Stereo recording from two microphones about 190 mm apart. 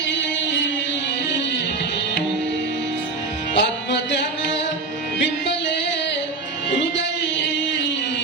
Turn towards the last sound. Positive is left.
turn(degrees=70)  # may be behind; listen again after turning